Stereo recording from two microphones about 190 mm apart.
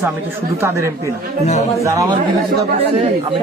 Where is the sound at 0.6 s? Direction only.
15° right (ahead or behind).